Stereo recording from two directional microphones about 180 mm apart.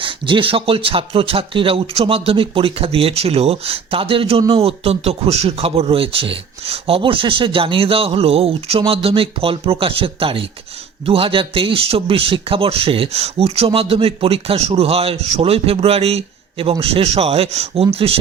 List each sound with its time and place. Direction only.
0.0 s a man's voice: 30° right (ahead or behind)